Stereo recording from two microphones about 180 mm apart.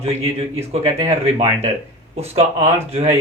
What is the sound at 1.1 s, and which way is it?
Speech, 40° right (ahead or behind).